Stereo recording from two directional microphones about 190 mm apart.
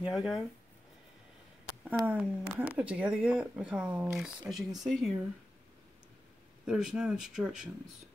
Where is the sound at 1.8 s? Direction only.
10° right (ahead or behind).